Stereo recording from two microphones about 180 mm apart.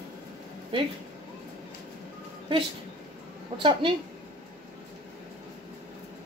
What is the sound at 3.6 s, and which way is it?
Speech, 30° right (ahead or behind).